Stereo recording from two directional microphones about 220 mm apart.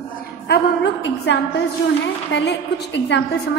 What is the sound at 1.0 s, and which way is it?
A woman's voice, 55° left (ahead or behind).